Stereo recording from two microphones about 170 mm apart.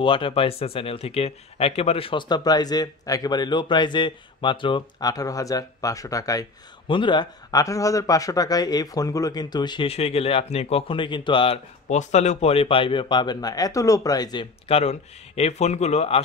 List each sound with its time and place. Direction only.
0.0 s speech: 30° left (ahead or behind)